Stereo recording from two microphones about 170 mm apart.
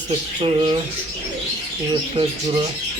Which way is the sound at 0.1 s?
35° right (ahead or behind).